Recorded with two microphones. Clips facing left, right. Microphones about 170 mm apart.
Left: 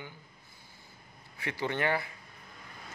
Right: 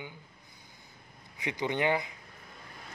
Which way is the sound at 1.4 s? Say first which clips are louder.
Right 2 dB; 15° right (ahead or behind).